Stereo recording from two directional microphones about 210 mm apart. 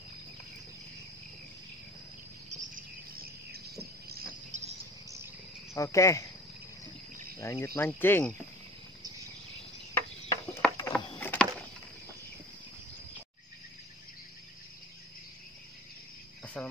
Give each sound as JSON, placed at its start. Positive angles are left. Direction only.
{"t": 2.5, "sound": "cricket", "side_deg": -40}
{"t": 5.8, "sound": "speech", "side_deg": 15}
{"t": 7.3, "sound": "speech", "side_deg": 15}
{"t": 9.9, "sound": "a sound", "side_deg": 10}
{"t": 16.6, "sound": "cricket", "side_deg": 5}